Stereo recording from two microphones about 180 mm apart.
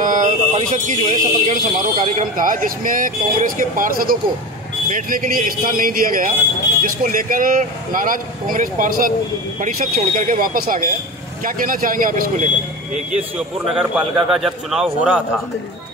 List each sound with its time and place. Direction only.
0.0 s speech: 45° right (ahead or behind)
13.7 s a man's voice: 5° right (ahead or behind)